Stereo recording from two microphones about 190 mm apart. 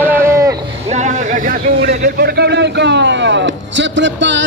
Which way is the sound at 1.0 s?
45° right (ahead or behind).